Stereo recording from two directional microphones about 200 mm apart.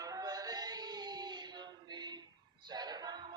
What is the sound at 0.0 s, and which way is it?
Music, 20° right (ahead or behind).